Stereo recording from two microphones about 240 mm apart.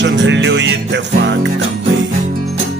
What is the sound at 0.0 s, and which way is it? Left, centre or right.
Music, right.